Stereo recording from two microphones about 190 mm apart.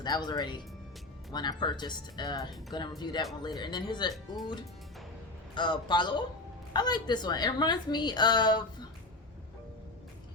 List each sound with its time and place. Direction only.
0.0 s a woman's voice: 20° left (ahead or behind)
5.5 s a woman's voice: 25° left (ahead or behind)